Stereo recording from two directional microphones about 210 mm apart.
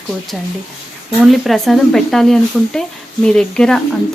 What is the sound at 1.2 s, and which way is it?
Speech, centre (ahead or behind).